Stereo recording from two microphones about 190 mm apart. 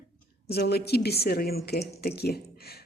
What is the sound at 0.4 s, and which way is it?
A woman's voice, 60° left (ahead or behind).